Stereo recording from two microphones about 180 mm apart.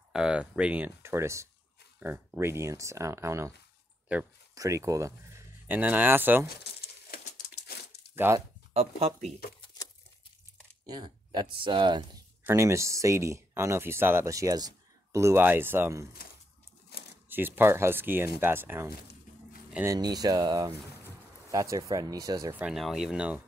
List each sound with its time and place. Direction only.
0.1 s speech: 5° right (ahead or behind)
6.4 s crumpling: 60° left (ahead or behind)
8.7 s speech: 35° right (ahead or behind)
10.9 s speech: 25° right (ahead or behind)
12.4 s speech: 15° right (ahead or behind)
17.3 s speech: 10° right (ahead or behind)
22.6 s speech: centre (ahead or behind)